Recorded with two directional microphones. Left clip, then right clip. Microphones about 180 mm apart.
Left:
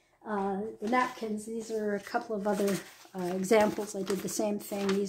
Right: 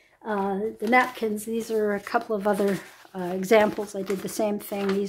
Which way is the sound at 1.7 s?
30° right (ahead or behind).